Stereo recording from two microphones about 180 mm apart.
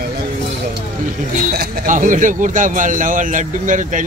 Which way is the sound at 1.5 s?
60° right (ahead or behind).